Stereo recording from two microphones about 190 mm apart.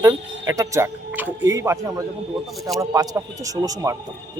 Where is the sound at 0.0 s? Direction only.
20° right (ahead or behind).